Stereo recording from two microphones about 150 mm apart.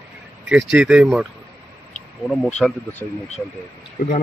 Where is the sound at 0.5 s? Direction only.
5° right (ahead or behind).